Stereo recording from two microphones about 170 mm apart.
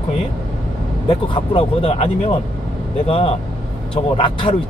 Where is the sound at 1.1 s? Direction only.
35° left (ahead or behind).